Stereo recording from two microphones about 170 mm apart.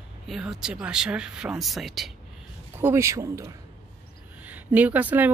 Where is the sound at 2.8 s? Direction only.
15° right (ahead or behind).